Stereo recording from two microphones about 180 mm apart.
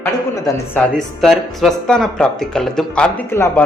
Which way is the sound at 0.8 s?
Centre (ahead or behind).